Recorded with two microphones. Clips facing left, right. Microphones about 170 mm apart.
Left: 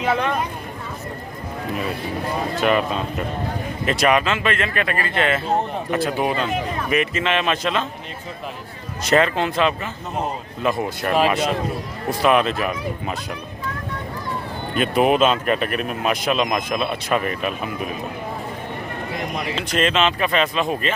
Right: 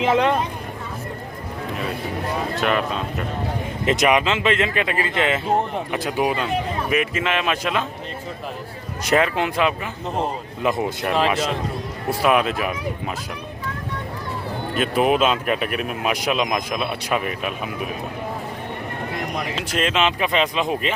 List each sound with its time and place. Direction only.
0.0 s speech: 20° right (ahead or behind)
2.6 s speech: centre (ahead or behind)
3.8 s speech: 15° right (ahead or behind)
9.0 s speech: 10° right (ahead or behind)
11.1 s speech: 10° left (ahead or behind)
12.2 s speech: 10° right (ahead or behind)
14.8 s speech: centre (ahead or behind)
19.5 s speech: 5° right (ahead or behind)